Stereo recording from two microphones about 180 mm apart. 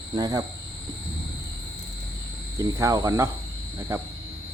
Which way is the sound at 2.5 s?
20° right (ahead or behind).